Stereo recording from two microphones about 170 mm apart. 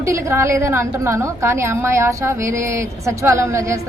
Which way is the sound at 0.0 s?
15° right (ahead or behind).